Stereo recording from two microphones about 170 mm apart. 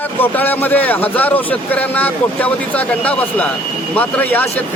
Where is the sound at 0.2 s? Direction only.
10° left (ahead or behind).